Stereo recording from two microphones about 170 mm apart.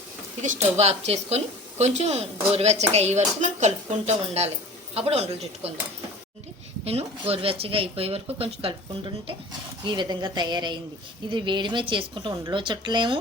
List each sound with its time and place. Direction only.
0.4 s speech: 45° right (ahead or behind)
6.8 s speech: 35° right (ahead or behind)